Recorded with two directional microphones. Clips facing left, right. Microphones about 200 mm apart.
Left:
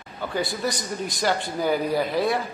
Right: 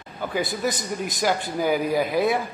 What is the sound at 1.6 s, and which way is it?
Speech, 10° right (ahead or behind).